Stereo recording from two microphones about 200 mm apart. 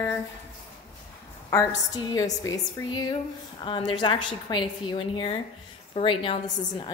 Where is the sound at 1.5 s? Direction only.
15° left (ahead or behind).